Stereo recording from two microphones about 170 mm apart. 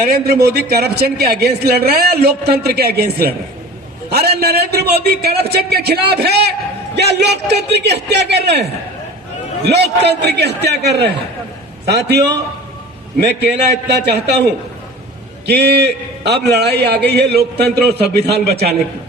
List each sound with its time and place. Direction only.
0.0 s a man's voice: 60° right (ahead or behind); by 8.6 s 80° right
9.6 s a man's voice: 80° right
15.4 s a man's voice: 75° right (ahead or behind)